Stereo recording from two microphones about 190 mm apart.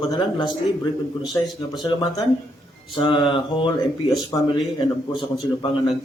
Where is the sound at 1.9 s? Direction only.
20° left (ahead or behind).